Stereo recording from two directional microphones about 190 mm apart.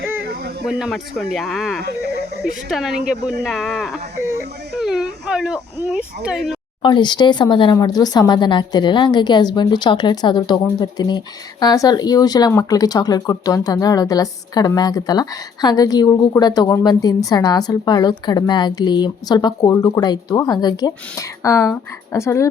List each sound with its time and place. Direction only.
0.6 s speech: centre (ahead or behind)
6.8 s speech: 25° left (ahead or behind)